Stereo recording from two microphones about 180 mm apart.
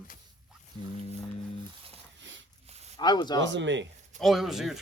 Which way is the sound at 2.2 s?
90° right.